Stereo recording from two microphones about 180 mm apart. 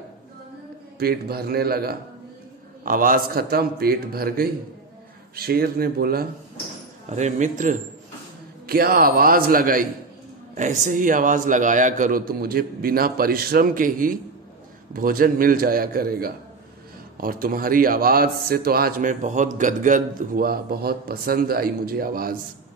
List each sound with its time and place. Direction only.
0.9 s speech: 60° right (ahead or behind)
7.1 s a man's voice: 40° right (ahead or behind)
8.6 s a man's voice: 55° right (ahead or behind)